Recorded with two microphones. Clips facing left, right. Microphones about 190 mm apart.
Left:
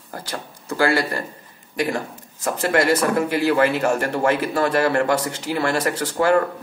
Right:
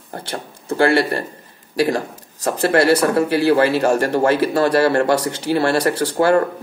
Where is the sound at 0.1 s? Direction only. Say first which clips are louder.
Right 3 dB; 25° right (ahead or behind).